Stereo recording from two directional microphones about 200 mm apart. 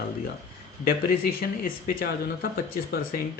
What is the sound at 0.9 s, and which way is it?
Speech, 50° left (ahead or behind).